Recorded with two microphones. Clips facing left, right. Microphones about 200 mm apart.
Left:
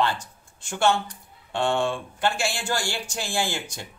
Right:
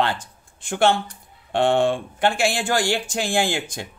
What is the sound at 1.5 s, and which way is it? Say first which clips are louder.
Speech: right 6 dB; 55° right (ahead or behind).